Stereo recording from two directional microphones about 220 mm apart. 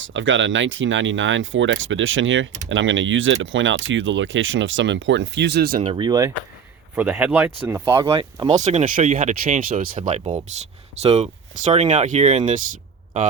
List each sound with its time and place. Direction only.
0.0 s speech: 60° right (ahead or behind)
5.8 s speech: 20° right (ahead or behind)
6.9 s speech: 5° right (ahead or behind); by 12.7 s 35° right (ahead or behind)